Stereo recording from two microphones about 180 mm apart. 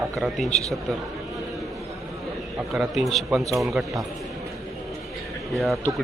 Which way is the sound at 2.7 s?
Centre (ahead or behind).